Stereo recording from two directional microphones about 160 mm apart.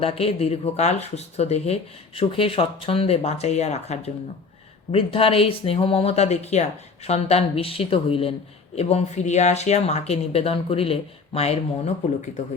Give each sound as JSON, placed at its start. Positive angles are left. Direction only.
{"t": 0.0, "sound": "speech", "side_deg": 35}